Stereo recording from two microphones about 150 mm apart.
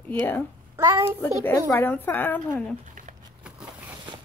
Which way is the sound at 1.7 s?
15° left (ahead or behind).